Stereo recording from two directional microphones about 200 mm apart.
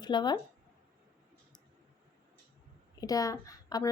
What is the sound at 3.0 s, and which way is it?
Speech, 20° left (ahead or behind).